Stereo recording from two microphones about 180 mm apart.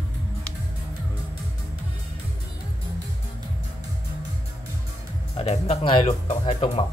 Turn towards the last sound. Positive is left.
turn(degrees=35)  # may be behind; listen again after turning